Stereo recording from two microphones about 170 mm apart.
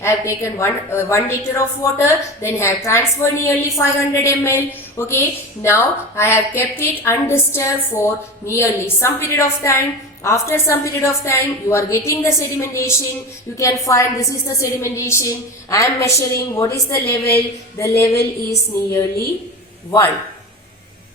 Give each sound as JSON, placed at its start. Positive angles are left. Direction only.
{"t": 0.0, "sound": "a woman's voice", "side_deg": 15}